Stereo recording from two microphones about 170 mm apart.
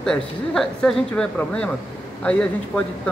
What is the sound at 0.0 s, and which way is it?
Speech, 5° left (ahead or behind).